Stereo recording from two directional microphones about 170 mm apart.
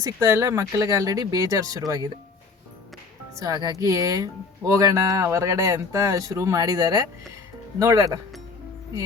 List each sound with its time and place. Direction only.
0.0 s speech: 15° right (ahead or behind)
3.3 s speech: 20° right (ahead or behind)